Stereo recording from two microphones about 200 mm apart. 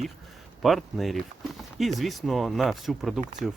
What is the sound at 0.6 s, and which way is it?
Speech, centre (ahead or behind).